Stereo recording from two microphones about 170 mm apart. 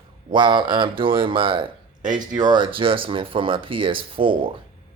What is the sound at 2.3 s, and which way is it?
Speech, 25° right (ahead or behind).